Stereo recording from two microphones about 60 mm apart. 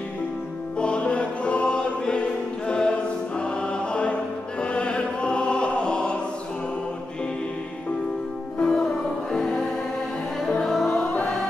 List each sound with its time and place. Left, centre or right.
0.7 s music: centre
8.5 s music: centre
9.3 s choir: centre
10.4 s music: centre